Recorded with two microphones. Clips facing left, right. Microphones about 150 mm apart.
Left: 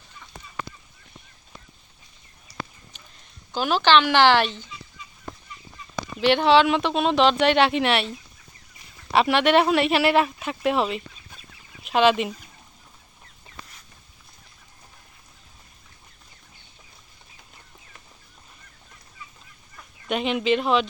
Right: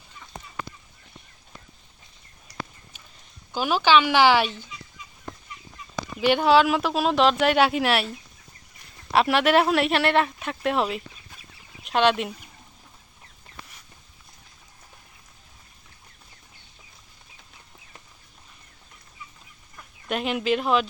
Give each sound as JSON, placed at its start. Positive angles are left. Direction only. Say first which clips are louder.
{"t": 3.5, "sound": "speech", "louder": "left 1 dB", "side_deg": -10}
{"t": 6.1, "sound": "speech", "louder": "left 1 dB", "side_deg": -5}
{"t": 9.1, "sound": "speech", "louder": "left 1 dB", "side_deg": 0}
{"t": 19.7, "sound": "speech", "louder": "left 2 dB", "side_deg": 0}